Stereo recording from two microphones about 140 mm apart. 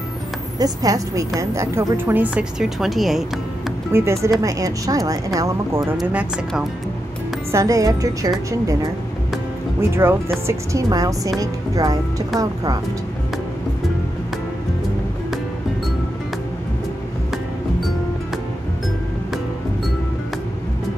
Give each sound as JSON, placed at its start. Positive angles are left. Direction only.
{"t": 0.6, "sound": "a woman's voice", "side_deg": -25}
{"t": 3.9, "sound": "speech", "side_deg": -20}
{"t": 6.0, "sound": "a woman's voice", "side_deg": -10}
{"t": 7.5, "sound": "speech", "side_deg": -25}
{"t": 9.8, "sound": "a woman's voice", "side_deg": -15}